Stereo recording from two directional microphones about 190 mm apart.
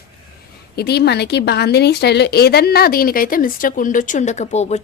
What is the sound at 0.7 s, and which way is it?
A woman's voice, 55° left (ahead or behind).